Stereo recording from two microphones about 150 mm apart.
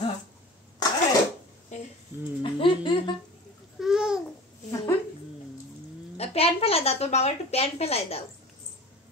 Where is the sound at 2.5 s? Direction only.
35° left (ahead or behind).